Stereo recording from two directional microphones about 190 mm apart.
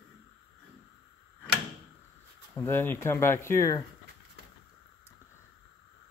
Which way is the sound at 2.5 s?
10° left (ahead or behind).